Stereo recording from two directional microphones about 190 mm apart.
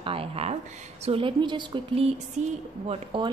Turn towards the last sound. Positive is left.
turn(degrees=-25)  # may be behind; listen again after turning